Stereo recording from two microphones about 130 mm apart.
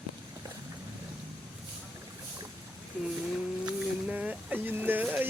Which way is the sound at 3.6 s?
10° right (ahead or behind).